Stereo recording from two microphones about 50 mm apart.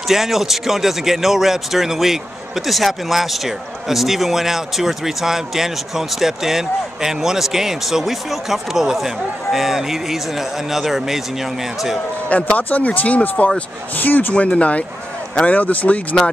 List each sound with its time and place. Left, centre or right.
0.1 s a man's voice: centre
12.3 s speech: left
14.3 s speech: left